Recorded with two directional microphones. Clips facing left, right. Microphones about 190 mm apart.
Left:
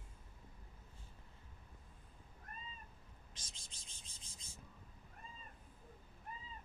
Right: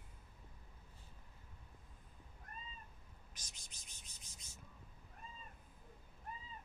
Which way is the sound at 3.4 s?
30° left (ahead or behind).